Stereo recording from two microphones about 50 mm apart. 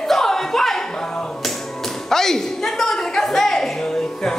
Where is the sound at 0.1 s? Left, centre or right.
Centre.